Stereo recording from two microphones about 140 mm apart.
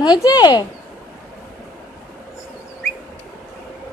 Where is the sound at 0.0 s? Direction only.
30° left (ahead or behind).